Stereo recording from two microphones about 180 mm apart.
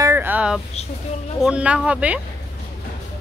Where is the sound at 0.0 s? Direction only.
10° right (ahead or behind).